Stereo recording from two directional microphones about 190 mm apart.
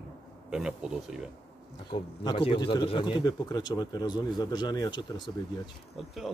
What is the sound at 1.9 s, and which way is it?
A man's voice, 25° left (ahead or behind).